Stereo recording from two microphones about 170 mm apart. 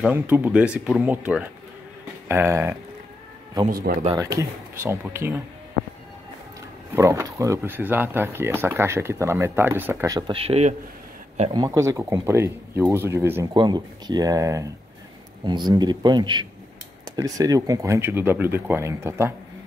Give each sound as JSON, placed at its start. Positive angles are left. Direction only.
{"t": 0.0, "sound": "speech", "side_deg": -10}
{"t": 3.7, "sound": "speech", "side_deg": -65}
{"t": 4.4, "sound": "speech", "side_deg": -15}
{"t": 7.0, "sound": "speech", "side_deg": -20}
{"t": 11.5, "sound": "speech", "side_deg": -20}